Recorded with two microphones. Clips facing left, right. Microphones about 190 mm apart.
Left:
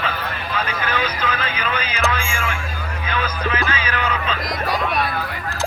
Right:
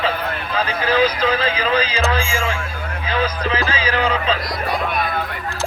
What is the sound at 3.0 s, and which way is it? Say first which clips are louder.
Music: right 3 dB; 30° right (ahead or behind).